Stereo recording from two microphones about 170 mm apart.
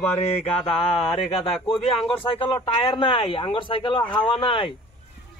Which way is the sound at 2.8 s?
30° left (ahead or behind).